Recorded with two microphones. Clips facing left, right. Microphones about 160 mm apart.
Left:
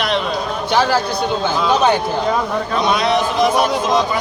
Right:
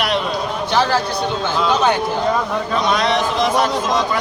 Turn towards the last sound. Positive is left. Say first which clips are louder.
# left 2 dB
turn(degrees=10)  # may be behind; listen again after turning